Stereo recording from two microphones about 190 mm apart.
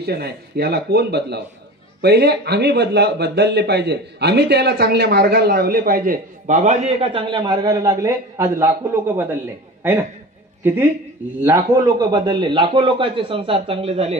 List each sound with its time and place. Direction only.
0.0 s speech: 55° right (ahead or behind); by 9.4 s 10° right (ahead or behind)
10.6 s a woman's voice: 10° right (ahead or behind); by 14.1 s 30° right (ahead or behind)